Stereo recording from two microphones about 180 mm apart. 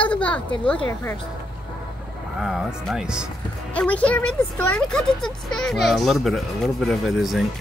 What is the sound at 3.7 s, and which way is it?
A woman's voice, 5° left (ahead or behind).